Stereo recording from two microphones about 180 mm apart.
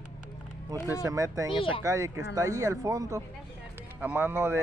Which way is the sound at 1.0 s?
15° right (ahead or behind).